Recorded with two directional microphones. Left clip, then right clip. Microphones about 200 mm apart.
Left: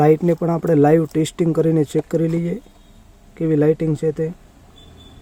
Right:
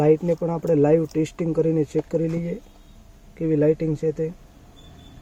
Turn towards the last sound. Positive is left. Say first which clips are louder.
# left 3 dB
turn(degrees=45)  # may be behind; listen again after turning